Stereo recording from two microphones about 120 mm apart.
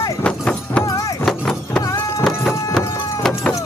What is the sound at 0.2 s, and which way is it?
Clip-clop, 10° left (ahead or behind).